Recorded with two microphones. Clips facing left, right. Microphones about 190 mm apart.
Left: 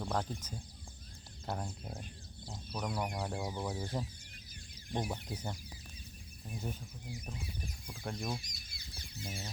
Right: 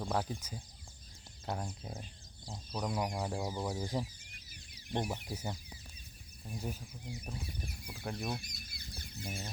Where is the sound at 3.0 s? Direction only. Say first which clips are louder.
Right 2 dB; 5° right (ahead or behind).